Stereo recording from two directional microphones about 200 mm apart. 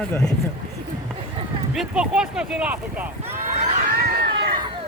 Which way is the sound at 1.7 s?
5° right (ahead or behind).